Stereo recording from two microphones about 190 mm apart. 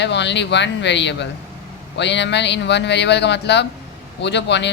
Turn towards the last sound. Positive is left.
turn(degrees=65)  # may be behind; listen again after turning